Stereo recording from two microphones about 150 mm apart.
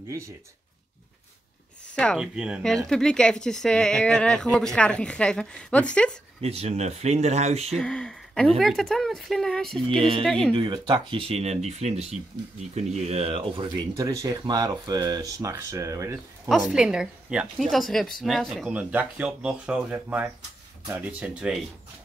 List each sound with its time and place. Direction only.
2.1 s speech: 5° right (ahead or behind)
6.4 s speech: 45° right (ahead or behind)
7.7 s speech: 5° left (ahead or behind)
9.9 s speech: 35° right (ahead or behind)
10.2 s speech: 5° left (ahead or behind)
10.5 s speech: 30° right (ahead or behind)
13.4 s speech: 25° right (ahead or behind)
16.4 s speech: centre (ahead or behind)